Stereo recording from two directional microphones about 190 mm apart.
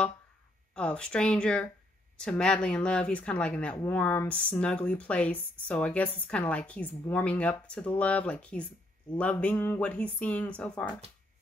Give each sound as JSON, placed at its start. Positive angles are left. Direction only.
{"t": 0.7, "sound": "a woman's voice", "side_deg": 5}